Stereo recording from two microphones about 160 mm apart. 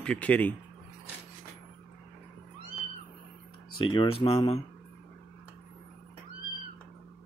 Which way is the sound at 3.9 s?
35° left (ahead or behind).